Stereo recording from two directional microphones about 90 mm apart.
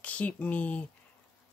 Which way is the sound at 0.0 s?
15° left (ahead or behind).